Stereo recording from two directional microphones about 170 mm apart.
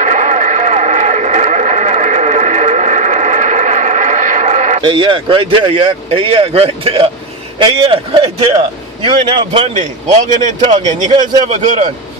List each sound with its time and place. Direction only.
0.0 s radio: 45° right (ahead or behind)
4.8 s a man's voice: 30° right (ahead or behind)
9.8 s a man's voice: 45° right (ahead or behind)
11.4 s a man's voice: 45° right (ahead or behind)